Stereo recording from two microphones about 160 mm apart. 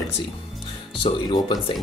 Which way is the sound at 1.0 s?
30° left (ahead or behind).